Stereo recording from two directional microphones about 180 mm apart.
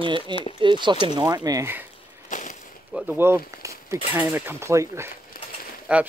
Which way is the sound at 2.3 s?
45° left (ahead or behind).